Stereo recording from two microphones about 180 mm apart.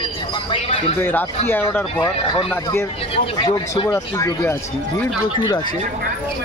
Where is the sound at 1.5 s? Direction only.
10° left (ahead or behind).